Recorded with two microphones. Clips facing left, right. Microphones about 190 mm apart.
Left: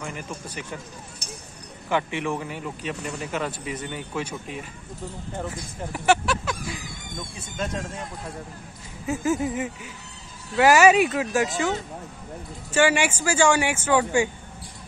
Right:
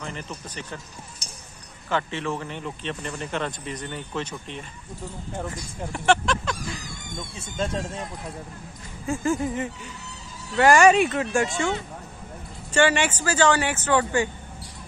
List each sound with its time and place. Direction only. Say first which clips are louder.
0.0 s speech: left 1 dB; 10° left (ahead or behind)
1.2 s a sound: left 6 dB; 60° left (ahead or behind)
1.9 s speech: left 1 dB; 15° left (ahead or behind)
5.9 s a sound: even; 5° left (ahead or behind)
7.5 s speech: right 2 dB; 30° right (ahead or behind)
9.0 s speech: even; 5° left (ahead or behind)
12.7 s speech: even; 10° left (ahead or behind)